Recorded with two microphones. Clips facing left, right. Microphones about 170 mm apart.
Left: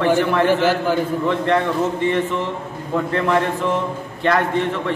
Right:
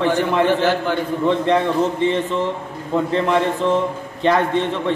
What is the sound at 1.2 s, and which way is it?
A man's voice, 20° right (ahead or behind).